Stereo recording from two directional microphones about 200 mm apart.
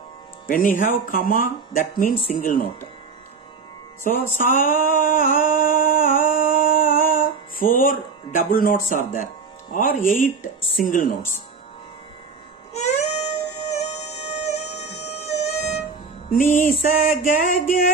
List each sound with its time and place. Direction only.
0.5 s speech: 45° left (ahead or behind)
4.1 s speech: 40° left (ahead or behind)
4.4 s a sound: 45° left (ahead or behind)
10.9 s music: 40° left (ahead or behind)
12.7 s music: 35° left (ahead or behind)
17.1 s speech: 45° left (ahead or behind)